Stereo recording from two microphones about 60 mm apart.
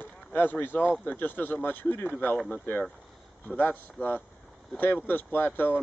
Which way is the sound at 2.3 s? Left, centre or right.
Centre.